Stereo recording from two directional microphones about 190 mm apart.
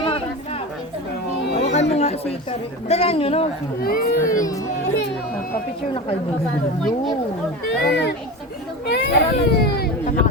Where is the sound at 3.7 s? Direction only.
50° left (ahead or behind).